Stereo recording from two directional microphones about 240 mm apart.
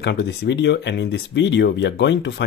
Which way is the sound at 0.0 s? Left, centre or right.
Left.